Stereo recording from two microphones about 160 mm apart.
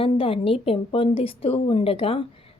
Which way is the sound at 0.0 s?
35° left (ahead or behind).